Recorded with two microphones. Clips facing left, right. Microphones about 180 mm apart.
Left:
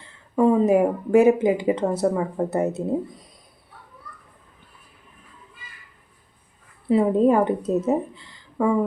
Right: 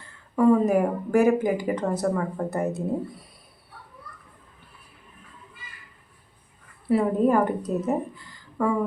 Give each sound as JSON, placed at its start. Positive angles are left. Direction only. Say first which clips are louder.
{"t": 0.3, "sound": "speech", "louder": "left 2 dB", "side_deg": 20}
{"t": 6.8, "sound": "a woman's voice", "louder": "left 3 dB", "side_deg": 20}